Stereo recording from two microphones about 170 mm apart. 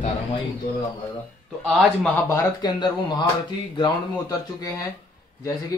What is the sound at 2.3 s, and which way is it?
A man's voice, 20° left (ahead or behind).